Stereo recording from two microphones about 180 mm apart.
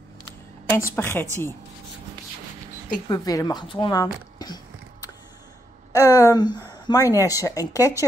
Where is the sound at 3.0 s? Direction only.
20° left (ahead or behind).